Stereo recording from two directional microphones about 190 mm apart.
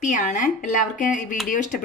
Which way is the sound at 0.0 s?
40° left (ahead or behind).